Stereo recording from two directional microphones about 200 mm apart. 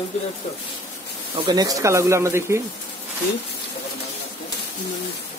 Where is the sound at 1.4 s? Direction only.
20° right (ahead or behind).